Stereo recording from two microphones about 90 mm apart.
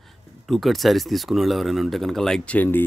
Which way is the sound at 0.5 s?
Centre (ahead or behind).